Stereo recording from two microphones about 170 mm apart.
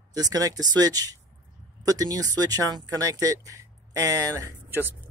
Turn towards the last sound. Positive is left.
turn(degrees=-10)  # may be behind; listen again after turning